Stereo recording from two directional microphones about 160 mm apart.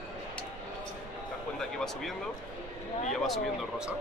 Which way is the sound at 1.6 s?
5° left (ahead or behind).